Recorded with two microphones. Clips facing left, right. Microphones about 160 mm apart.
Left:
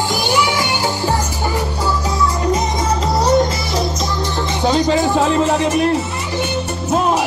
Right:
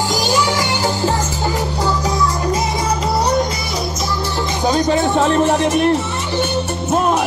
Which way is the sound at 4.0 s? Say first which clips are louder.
Left 1 dB; 20° left (ahead or behind).